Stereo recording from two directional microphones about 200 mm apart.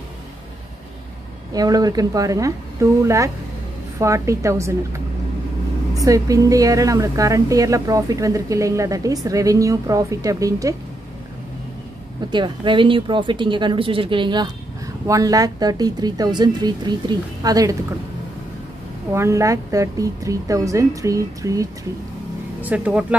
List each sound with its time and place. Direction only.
1.5 s a woman's voice: 20° right (ahead or behind)
12.3 s speech: 25° right (ahead or behind)
19.1 s a woman's voice: 15° right (ahead or behind)